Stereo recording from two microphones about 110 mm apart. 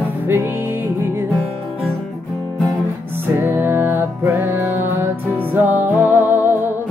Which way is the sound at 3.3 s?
20° right (ahead or behind).